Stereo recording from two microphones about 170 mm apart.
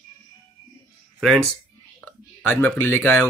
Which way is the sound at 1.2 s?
Centre (ahead or behind).